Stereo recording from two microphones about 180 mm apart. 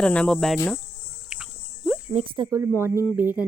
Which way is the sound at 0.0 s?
5° left (ahead or behind).